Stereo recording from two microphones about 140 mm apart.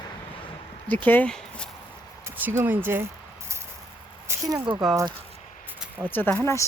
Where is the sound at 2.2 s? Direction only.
15° right (ahead or behind).